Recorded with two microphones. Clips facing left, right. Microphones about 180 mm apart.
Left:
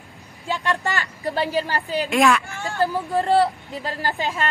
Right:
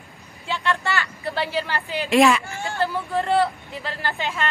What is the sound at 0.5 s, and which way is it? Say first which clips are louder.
A woman's voice: left 1 dB; 40° left (ahead or behind).